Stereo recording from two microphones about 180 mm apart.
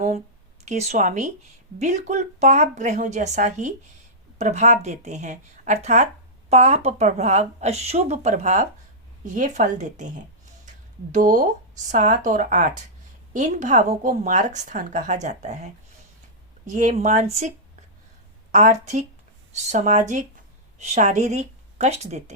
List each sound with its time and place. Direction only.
0.6 s a woman's voice: 40° right (ahead or behind)
18.5 s a woman's voice: 40° right (ahead or behind)